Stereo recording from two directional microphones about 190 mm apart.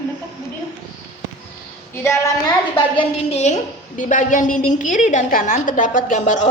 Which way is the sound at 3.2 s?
35° left (ahead or behind).